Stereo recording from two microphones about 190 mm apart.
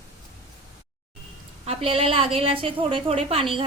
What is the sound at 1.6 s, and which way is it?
A woman's voice, 30° right (ahead or behind).